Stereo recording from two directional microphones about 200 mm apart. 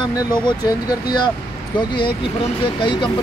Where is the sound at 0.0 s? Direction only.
20° left (ahead or behind).